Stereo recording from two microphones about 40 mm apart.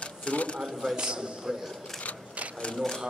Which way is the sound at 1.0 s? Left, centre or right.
Right.